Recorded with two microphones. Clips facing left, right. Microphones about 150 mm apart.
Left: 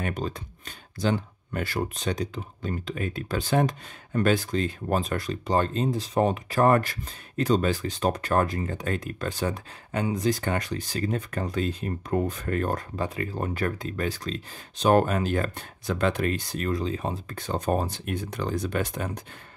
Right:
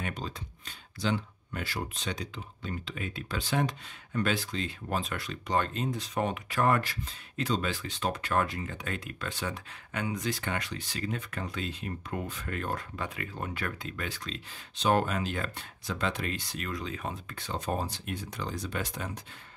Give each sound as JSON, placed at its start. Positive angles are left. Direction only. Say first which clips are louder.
{"t": 0.0, "sound": "speech", "louder": "left 6 dB", "side_deg": 50}